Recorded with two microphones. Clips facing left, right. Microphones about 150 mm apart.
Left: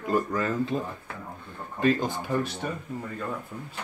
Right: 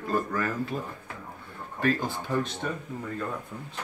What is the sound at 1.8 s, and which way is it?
Speech, 20° left (ahead or behind).